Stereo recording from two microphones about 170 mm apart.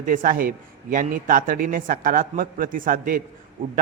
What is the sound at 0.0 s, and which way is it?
A man's voice, 55° right (ahead or behind).